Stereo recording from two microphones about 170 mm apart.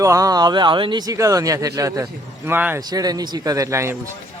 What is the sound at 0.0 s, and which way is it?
Speech, 20° right (ahead or behind).